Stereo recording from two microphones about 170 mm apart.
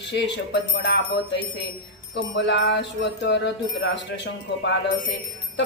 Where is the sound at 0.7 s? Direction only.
90° left.